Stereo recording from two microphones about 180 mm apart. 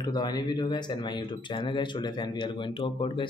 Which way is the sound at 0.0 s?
20° left (ahead or behind).